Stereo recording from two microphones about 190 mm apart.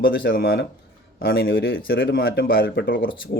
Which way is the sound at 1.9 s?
50° left (ahead or behind).